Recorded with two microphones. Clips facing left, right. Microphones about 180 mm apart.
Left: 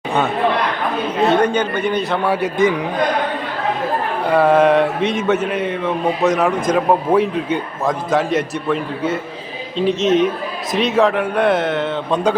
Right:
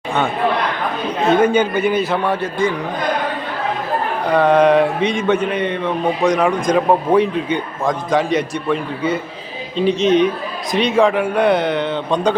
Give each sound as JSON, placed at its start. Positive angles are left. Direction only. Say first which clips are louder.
{"t": 1.3, "sound": "a man's voice", "louder": "right 5 dB", "side_deg": -5}
{"t": 2.3, "sound": "a man's voice", "louder": "left 3 dB", "side_deg": 20}
{"t": 4.3, "sound": "a man's voice", "louder": "even", "side_deg": 5}